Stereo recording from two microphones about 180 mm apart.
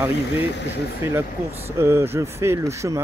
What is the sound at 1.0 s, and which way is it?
Speech, 15° right (ahead or behind).